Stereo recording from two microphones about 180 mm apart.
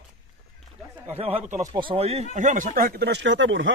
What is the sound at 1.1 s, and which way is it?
Speech, 35° right (ahead or behind).